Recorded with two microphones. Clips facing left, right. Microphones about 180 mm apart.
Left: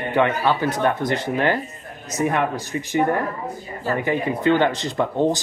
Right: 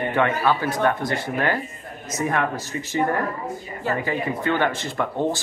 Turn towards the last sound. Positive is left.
turn(degrees=20)  # may be behind; listen again after turning